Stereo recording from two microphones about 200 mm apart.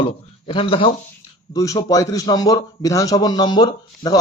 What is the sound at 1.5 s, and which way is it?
A man's voice, 15° left (ahead or behind).